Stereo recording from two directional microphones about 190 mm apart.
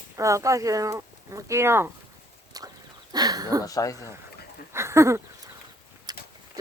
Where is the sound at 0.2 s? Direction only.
15° right (ahead or behind).